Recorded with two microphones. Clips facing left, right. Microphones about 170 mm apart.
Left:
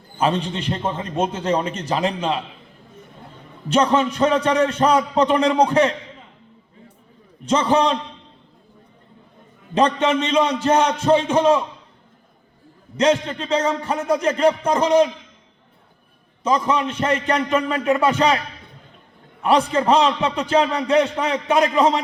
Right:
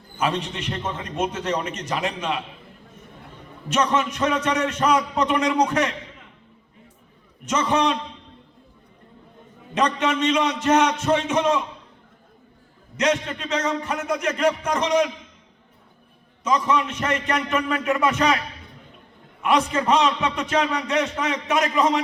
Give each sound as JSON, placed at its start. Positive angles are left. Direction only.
{"t": 0.2, "sound": "a man's voice", "side_deg": 30}
{"t": 3.7, "sound": "a man's voice", "side_deg": 30}
{"t": 7.4, "sound": "a man's voice", "side_deg": 30}
{"t": 9.7, "sound": "a man's voice", "side_deg": 30}
{"t": 13.0, "sound": "a man's voice", "side_deg": 30}
{"t": 16.4, "sound": "a man's voice", "side_deg": 30}
{"t": 19.4, "sound": "a man's voice", "side_deg": 30}